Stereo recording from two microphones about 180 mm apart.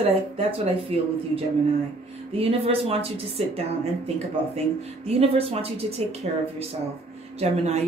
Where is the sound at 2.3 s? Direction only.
35° right (ahead or behind).